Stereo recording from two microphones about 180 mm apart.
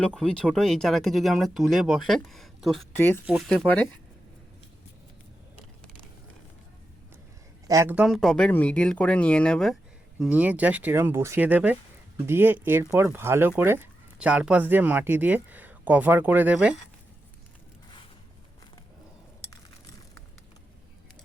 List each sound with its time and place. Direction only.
0.0 s speech: 5° left (ahead or behind)
2.9 s speech: 10° left (ahead or behind)
7.7 s speech: 15° right (ahead or behind)
7.9 s speech: centre (ahead or behind)
10.2 s speech: 5° right (ahead or behind)